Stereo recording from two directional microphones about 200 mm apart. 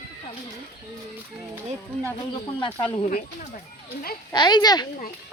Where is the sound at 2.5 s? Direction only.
25° left (ahead or behind).